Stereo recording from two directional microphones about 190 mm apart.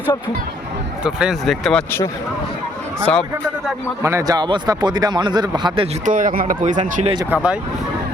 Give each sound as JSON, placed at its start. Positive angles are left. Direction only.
{"t": 1.0, "sound": "speech", "side_deg": -5}
{"t": 3.1, "sound": "speech", "side_deg": 5}
{"t": 4.0, "sound": "speech", "side_deg": -15}
{"t": 6.1, "sound": "speech", "side_deg": -45}